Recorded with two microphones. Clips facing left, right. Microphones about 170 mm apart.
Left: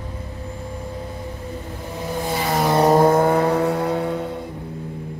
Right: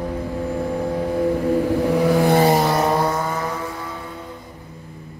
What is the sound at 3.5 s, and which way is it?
Mantra, 70° left (ahead or behind).